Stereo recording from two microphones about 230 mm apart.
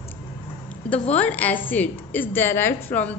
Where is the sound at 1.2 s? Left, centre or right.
Centre.